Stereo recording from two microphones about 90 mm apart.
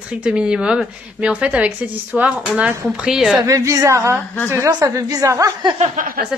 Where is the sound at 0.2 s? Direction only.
10° right (ahead or behind).